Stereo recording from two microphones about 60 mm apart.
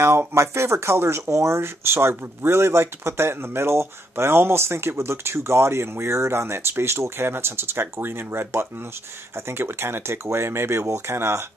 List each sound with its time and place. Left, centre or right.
0.3 s speech: right